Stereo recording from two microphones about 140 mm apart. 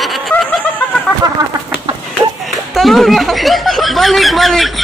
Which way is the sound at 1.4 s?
30° right (ahead or behind).